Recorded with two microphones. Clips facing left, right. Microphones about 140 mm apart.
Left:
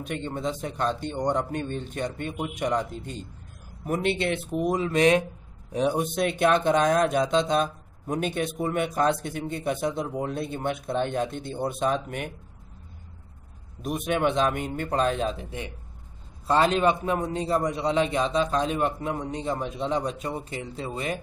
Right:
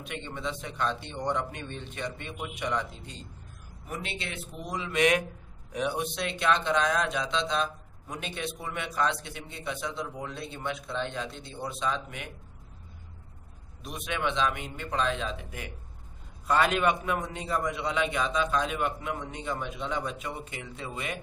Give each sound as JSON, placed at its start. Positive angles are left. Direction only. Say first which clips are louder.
{"t": 0.0, "sound": "a man's voice", "louder": "left 6 dB", "side_deg": 40}
{"t": 3.8, "sound": "speech", "louder": "left 12 dB", "side_deg": 55}
{"t": 13.8, "sound": "speech", "louder": "left 7 dB", "side_deg": 50}
{"t": 16.4, "sound": "a man's voice", "louder": "left 4 dB", "side_deg": 30}